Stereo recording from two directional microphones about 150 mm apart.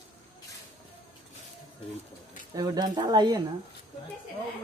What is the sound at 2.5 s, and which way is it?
Speech, 25° right (ahead or behind).